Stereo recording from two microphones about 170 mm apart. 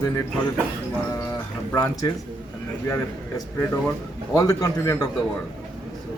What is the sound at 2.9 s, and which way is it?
A man's voice, 15° left (ahead or behind).